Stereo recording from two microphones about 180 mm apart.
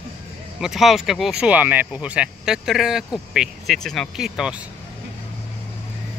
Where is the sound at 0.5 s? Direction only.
Centre (ahead or behind).